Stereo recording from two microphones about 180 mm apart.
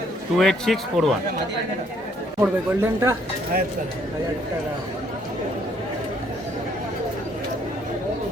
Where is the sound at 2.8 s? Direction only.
15° right (ahead or behind).